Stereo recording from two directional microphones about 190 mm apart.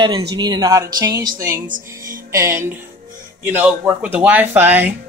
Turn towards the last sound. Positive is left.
turn(degrees=-10)  # may be behind; listen again after turning